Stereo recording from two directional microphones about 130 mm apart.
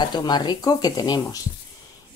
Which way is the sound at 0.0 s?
35° left (ahead or behind).